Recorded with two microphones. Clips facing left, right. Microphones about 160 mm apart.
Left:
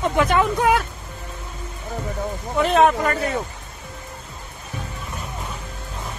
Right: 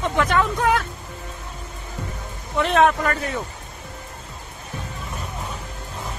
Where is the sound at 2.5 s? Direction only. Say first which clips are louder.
Left 1 dB; centre (ahead or behind).